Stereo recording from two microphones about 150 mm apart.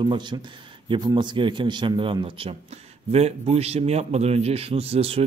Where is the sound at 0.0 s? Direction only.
30° right (ahead or behind).